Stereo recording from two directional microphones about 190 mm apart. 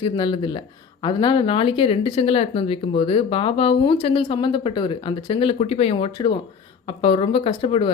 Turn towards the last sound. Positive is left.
turn(degrees=25)  # may be behind; listen again after turning